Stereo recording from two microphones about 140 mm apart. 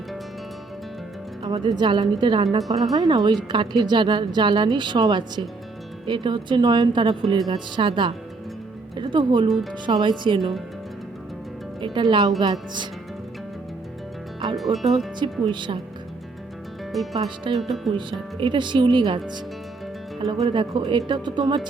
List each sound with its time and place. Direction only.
1.5 s a woman's voice: 35° right (ahead or behind)
11.8 s a woman's voice: 35° right (ahead or behind)
14.5 s speech: centre (ahead or behind)
15.2 s a woman's voice: 35° right (ahead or behind)
16.9 s speech: centre (ahead or behind)
17.9 s a woman's voice: 35° right (ahead or behind)
20.5 s a woman's voice: 35° right (ahead or behind)